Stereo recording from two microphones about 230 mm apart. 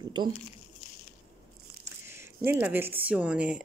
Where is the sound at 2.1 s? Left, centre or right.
Centre.